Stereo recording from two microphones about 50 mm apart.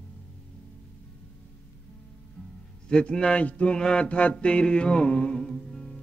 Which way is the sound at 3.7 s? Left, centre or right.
Centre.